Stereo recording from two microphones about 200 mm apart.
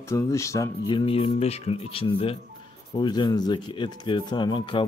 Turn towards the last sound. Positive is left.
turn(degrees=25)  # may be behind; listen again after turning